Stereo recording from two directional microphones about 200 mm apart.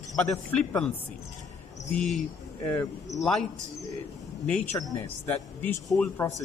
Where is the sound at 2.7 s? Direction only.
15° left (ahead or behind).